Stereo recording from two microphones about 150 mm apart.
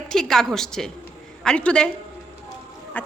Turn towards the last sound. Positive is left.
turn(degrees=10)  # may be behind; listen again after turning